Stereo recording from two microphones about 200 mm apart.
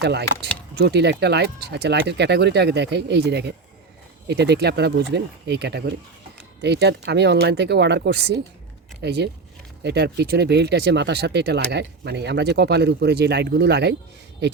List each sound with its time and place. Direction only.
0.0 s speech: 55° right (ahead or behind)